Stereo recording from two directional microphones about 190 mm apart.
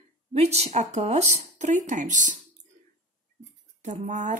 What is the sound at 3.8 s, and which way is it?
Speech, 40° right (ahead or behind).